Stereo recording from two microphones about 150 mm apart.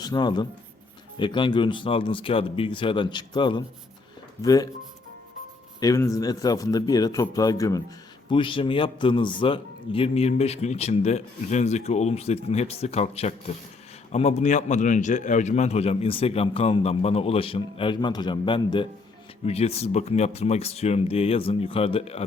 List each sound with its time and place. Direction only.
0.0 s a man's voice: 25° left (ahead or behind)
5.8 s a man's voice: 20° left (ahead or behind)
8.3 s a man's voice: 35° left (ahead or behind)
19.5 s a man's voice: 45° left (ahead or behind)